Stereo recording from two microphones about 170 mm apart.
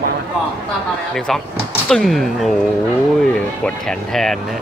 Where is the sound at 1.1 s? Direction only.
Centre (ahead or behind).